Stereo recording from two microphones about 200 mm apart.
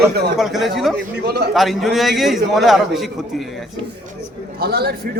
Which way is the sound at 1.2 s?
55° right (ahead or behind).